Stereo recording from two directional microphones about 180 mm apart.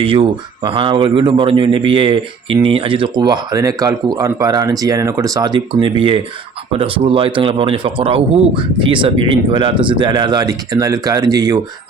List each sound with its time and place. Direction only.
0.0 s speech: 30° right (ahead or behind)